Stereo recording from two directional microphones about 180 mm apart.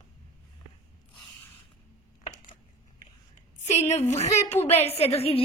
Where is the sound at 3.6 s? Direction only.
35° left (ahead or behind).